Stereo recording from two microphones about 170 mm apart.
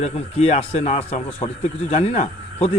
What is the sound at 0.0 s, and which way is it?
Speech, 40° left (ahead or behind).